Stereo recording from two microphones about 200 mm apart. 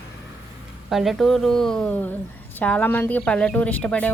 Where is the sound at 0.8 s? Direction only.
Centre (ahead or behind).